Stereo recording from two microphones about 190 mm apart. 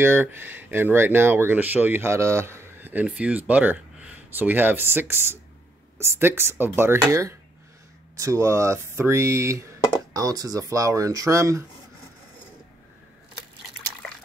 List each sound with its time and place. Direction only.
0.0 s speech: 10° right (ahead or behind)